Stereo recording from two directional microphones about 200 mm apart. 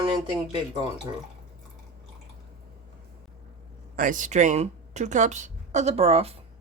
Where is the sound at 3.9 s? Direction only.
40° right (ahead or behind).